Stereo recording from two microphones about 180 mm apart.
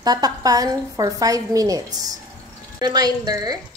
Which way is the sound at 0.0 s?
20° right (ahead or behind).